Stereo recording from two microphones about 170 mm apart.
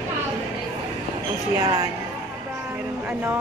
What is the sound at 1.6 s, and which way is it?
Speech, 20° right (ahead or behind).